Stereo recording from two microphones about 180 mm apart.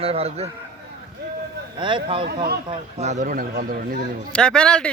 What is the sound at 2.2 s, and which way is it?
Speech, 60° right (ahead or behind).